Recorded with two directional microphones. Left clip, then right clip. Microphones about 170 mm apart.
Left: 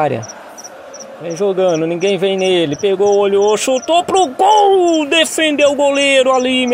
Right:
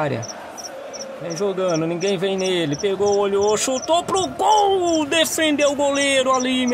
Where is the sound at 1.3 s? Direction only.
15° left (ahead or behind).